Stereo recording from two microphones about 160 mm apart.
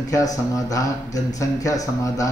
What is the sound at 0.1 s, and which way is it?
Speech, 20° left (ahead or behind).